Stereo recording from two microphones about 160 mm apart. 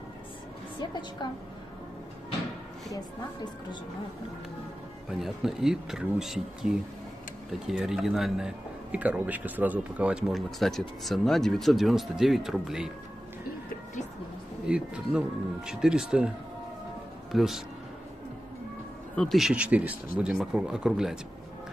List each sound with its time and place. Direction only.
1.2 s a woman's voice: 25° left (ahead or behind)
5.2 s a man's voice: 5° right (ahead or behind)
14.7 s a man's voice: 5° right (ahead or behind)
17.3 s speech: centre (ahead or behind)
19.1 s a man's voice: centre (ahead or behind)